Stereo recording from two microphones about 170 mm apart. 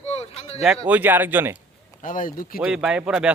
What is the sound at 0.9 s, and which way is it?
Speech, 10° right (ahead or behind).